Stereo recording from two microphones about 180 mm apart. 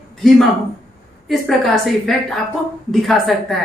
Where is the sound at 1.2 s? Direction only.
Centre (ahead or behind).